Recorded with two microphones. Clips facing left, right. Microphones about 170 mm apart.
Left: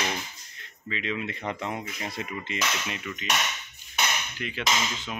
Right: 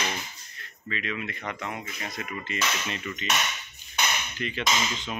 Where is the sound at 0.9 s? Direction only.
20° left (ahead or behind).